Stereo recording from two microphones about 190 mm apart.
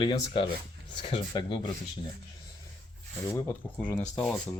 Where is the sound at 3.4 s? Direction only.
10° left (ahead or behind).